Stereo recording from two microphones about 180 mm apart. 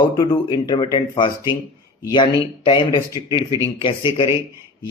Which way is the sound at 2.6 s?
25° left (ahead or behind).